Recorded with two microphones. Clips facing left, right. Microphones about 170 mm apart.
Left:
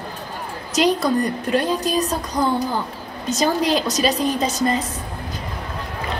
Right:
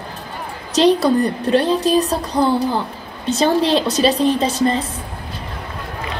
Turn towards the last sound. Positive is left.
turn(degrees=-30)  # may be behind; listen again after turning